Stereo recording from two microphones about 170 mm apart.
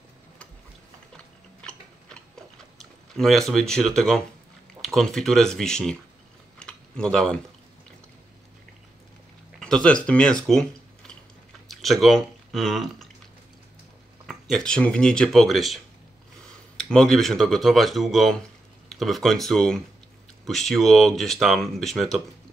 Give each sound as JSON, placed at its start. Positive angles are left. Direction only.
{"t": 2.8, "sound": "speech", "side_deg": 0}
{"t": 6.6, "sound": "typing", "side_deg": 5}
{"t": 9.6, "sound": "speech", "side_deg": 5}
{"t": 14.2, "sound": "speech", "side_deg": 5}